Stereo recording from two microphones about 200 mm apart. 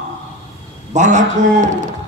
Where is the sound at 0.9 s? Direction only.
35° right (ahead or behind).